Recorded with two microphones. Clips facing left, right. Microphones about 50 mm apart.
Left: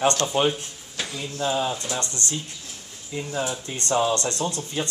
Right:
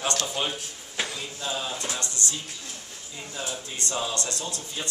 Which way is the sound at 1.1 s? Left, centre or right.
Centre.